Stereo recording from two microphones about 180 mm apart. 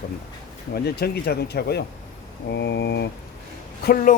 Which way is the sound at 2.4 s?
70° left (ahead or behind).